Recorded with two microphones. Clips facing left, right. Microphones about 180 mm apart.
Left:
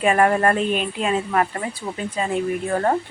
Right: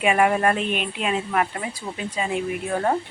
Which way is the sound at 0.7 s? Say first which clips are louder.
Left 4 dB; 35° left (ahead or behind).